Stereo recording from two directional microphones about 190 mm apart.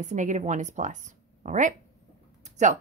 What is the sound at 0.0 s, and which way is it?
Speech, 40° right (ahead or behind).